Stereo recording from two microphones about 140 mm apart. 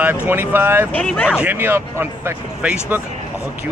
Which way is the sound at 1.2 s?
10° right (ahead or behind).